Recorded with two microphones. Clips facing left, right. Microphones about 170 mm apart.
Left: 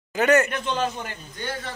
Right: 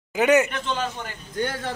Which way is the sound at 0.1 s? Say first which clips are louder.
Right 1 dB; 15° right (ahead or behind).